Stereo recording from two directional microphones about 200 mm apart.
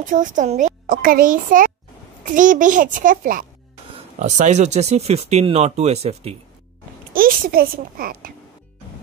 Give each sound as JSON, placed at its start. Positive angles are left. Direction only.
{"t": 0.0, "sound": "speech", "side_deg": -40}
{"t": 7.2, "sound": "a child's voice", "side_deg": -45}